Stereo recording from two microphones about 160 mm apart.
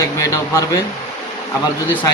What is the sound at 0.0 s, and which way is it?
Speech, 20° left (ahead or behind).